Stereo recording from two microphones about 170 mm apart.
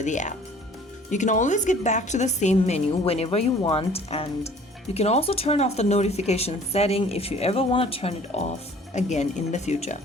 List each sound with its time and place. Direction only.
0.0 s a woman's voice: 45° left (ahead or behind)